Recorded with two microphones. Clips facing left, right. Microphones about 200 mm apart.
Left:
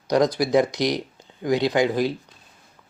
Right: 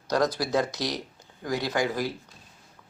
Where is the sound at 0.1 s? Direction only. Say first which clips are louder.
Left 6 dB; 15° left (ahead or behind).